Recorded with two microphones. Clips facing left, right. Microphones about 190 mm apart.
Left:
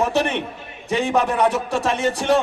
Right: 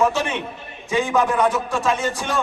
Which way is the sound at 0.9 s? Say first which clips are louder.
Even; 65° left (ahead or behind).